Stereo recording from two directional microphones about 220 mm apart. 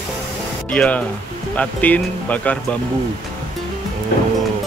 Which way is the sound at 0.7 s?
5° left (ahead or behind).